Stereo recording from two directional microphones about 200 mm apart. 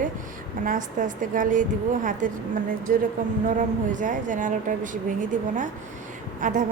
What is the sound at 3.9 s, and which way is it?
A woman's voice, 40° right (ahead or behind).